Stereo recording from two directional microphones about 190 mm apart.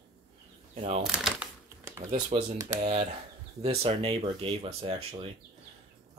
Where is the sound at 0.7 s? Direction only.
35° right (ahead or behind).